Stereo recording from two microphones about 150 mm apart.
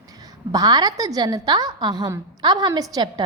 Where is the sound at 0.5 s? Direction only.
25° right (ahead or behind).